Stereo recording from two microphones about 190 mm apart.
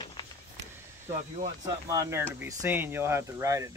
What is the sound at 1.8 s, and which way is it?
Speech, 15° right (ahead or behind).